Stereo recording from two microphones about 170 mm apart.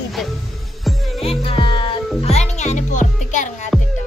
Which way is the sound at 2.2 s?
40° left (ahead or behind).